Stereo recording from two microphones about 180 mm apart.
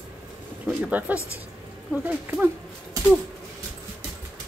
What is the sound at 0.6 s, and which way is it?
Speech, 10° right (ahead or behind).